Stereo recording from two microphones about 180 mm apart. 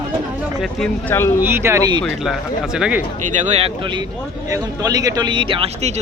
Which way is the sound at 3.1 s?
40° right (ahead or behind).